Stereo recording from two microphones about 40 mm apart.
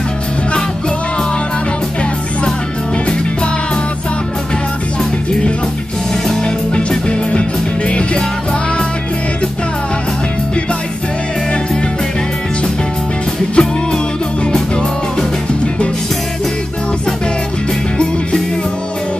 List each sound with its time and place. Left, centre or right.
6.4 s music: left
13.6 s music: left